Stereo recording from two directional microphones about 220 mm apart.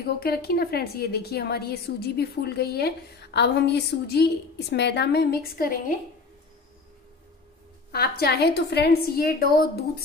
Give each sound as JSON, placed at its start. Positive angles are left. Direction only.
{"t": 0.0, "sound": "a woman's voice", "side_deg": 45}
{"t": 7.9, "sound": "a woman's voice", "side_deg": 45}